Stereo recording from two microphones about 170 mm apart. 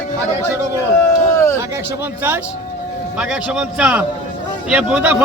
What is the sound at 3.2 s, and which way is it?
A man's voice, 5° right (ahead or behind).